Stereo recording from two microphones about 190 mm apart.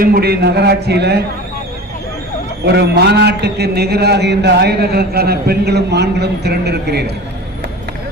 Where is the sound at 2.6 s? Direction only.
60° right (ahead or behind).